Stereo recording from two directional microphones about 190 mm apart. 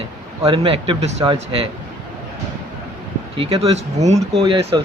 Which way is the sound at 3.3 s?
30° right (ahead or behind).